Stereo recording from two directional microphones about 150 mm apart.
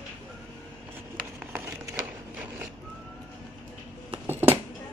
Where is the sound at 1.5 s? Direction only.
20° right (ahead or behind).